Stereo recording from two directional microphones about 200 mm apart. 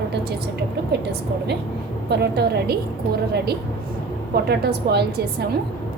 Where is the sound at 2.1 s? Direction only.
55° right (ahead or behind).